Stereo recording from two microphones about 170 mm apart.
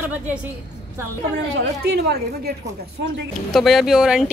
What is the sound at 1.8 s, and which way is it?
Speech, 75° right (ahead or behind).